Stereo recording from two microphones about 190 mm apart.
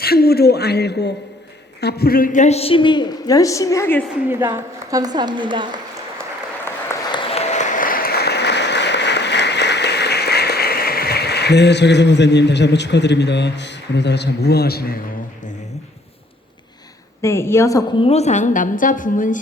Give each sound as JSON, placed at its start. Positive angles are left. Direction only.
{"t": 0.0, "sound": "a man's voice", "side_deg": 55}
{"t": 4.3, "sound": "a woman's voice", "side_deg": -10}
{"t": 7.1, "sound": "applause", "side_deg": 30}
{"t": 17.2, "sound": "a woman's voice", "side_deg": 15}
{"t": 18.0, "sound": "a woman's voice", "side_deg": 35}